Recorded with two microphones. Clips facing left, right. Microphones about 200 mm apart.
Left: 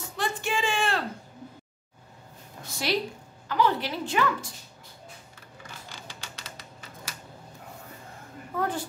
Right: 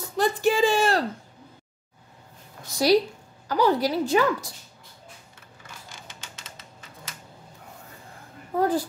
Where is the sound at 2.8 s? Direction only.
40° right (ahead or behind).